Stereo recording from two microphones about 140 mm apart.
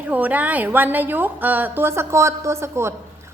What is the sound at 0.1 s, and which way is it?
A woman's voice, 10° right (ahead or behind).